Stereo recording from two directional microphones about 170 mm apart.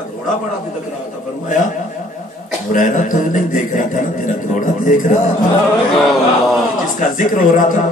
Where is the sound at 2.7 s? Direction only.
50° left (ahead or behind).